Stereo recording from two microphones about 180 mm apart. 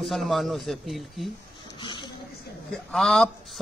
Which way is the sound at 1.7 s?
25° left (ahead or behind).